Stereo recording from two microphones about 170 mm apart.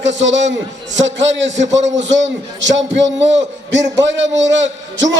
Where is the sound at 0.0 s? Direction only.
90° right.